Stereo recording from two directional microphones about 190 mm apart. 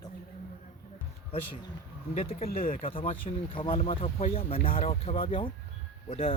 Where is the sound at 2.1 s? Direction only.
30° left (ahead or behind).